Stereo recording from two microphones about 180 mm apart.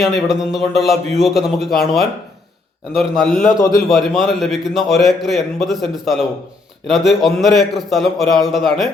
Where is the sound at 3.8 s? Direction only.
Centre (ahead or behind).